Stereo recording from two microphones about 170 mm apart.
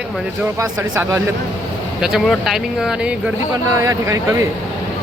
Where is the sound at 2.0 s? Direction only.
Centre (ahead or behind).